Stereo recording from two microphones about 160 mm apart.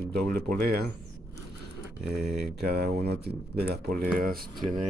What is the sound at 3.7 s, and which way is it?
Speech, 70° right (ahead or behind).